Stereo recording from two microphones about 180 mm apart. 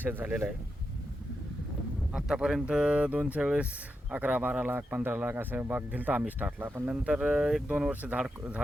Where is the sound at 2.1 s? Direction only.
5° right (ahead or behind).